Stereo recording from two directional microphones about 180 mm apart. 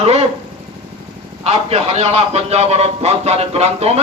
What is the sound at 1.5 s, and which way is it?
Speech, 35° right (ahead or behind).